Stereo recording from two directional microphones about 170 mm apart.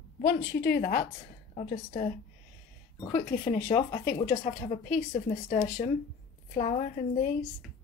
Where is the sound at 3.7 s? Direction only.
35° left (ahead or behind).